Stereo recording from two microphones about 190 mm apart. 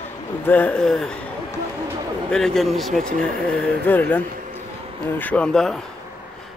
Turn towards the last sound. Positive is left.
turn(degrees=5)  # may be behind; listen again after turning